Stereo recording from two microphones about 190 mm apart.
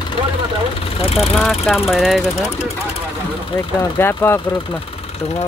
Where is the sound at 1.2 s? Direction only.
Centre (ahead or behind).